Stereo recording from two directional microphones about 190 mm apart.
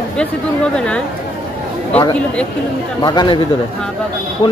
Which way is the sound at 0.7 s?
5° left (ahead or behind).